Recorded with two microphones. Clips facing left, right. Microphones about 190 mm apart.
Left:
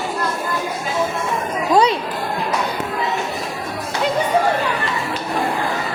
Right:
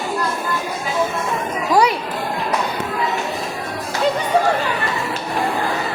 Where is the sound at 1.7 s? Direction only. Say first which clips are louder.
Left 1 dB; 20° left (ahead or behind).